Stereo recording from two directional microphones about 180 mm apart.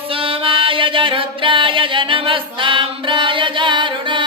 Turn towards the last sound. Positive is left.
turn(degrees=-25)  # may be behind; listen again after turning